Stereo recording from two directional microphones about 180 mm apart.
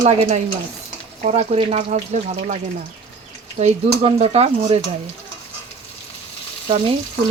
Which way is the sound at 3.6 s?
35° right (ahead or behind).